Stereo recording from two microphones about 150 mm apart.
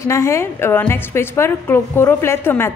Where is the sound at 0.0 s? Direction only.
20° left (ahead or behind).